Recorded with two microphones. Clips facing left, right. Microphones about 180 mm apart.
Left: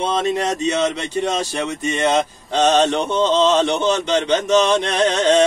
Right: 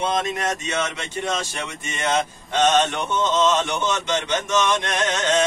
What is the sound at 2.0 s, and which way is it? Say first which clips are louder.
Speech: left 3 dB; 35° left (ahead or behind).